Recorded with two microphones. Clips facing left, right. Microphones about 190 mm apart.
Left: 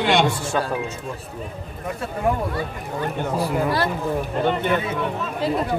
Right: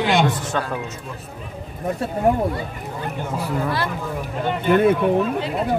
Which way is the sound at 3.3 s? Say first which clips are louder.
Left 2 dB; 40° left (ahead or behind).